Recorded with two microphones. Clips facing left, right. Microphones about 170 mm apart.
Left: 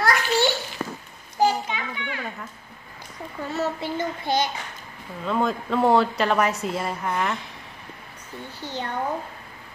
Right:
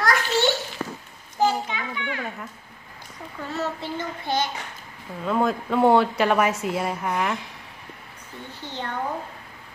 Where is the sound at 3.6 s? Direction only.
10° left (ahead or behind).